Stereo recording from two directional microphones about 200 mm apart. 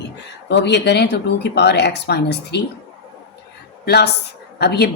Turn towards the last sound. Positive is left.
turn(degrees=55)  # may be behind; listen again after turning